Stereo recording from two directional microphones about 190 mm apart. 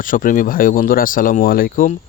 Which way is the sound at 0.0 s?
45° left (ahead or behind).